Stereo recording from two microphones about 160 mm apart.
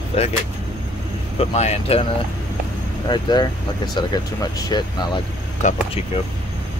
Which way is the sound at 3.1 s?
30° left (ahead or behind).